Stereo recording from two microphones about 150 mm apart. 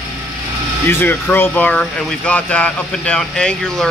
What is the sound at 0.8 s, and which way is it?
Speech, 15° left (ahead or behind).